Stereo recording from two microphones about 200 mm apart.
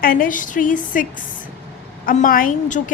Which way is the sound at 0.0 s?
45° left (ahead or behind).